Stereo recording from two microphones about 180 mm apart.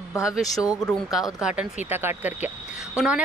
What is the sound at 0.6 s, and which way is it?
Speech, 20° left (ahead or behind).